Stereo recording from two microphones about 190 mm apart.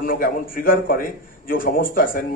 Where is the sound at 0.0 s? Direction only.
50° left (ahead or behind).